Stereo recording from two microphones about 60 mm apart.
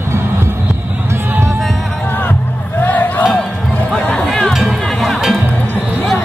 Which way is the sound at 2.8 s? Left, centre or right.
Left.